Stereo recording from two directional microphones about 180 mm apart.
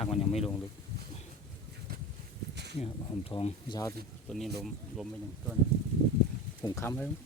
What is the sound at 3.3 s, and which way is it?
Speech, 30° left (ahead or behind).